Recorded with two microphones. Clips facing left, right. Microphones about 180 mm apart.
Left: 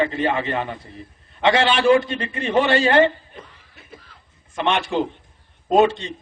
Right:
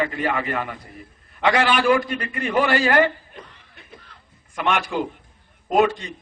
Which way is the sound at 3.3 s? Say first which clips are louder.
Left 1 dB; centre (ahead or behind).